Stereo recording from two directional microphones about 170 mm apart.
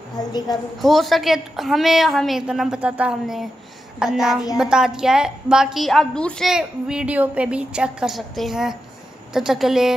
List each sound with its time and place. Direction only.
0.1 s a woman's voice: 25° left (ahead or behind)
0.7 s a woman's voice: centre (ahead or behind)